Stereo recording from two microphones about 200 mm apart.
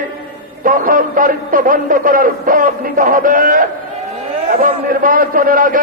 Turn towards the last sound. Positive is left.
turn(degrees=-45)  # may be behind; listen again after turning